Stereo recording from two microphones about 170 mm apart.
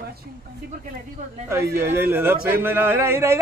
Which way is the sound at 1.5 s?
15° right (ahead or behind).